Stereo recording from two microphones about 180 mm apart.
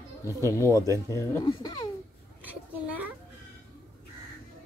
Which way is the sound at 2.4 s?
10° right (ahead or behind).